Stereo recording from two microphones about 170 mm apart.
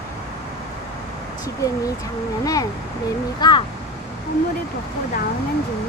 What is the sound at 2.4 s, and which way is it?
Speech, 20° left (ahead or behind).